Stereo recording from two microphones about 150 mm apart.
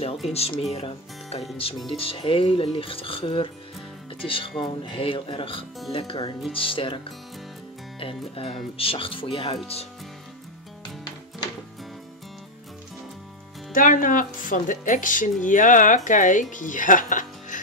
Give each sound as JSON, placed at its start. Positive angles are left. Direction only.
{"t": 0.3, "sound": "speech", "side_deg": 40}
{"t": 8.0, "sound": "speech", "side_deg": 40}
{"t": 13.7, "sound": "speech", "side_deg": 60}